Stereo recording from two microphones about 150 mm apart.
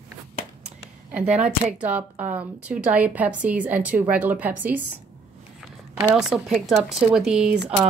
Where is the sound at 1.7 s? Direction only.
10° right (ahead or behind).